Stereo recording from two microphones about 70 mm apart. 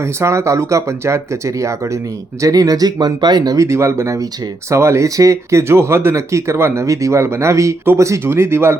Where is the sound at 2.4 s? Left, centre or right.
Right.